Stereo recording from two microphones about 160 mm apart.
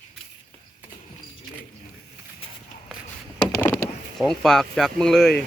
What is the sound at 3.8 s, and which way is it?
Speech, centre (ahead or behind).